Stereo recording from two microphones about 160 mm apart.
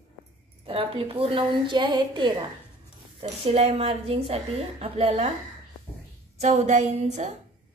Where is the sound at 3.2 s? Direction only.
40° right (ahead or behind).